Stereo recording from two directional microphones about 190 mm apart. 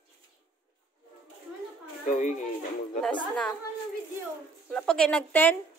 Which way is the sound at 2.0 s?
40° left (ahead or behind).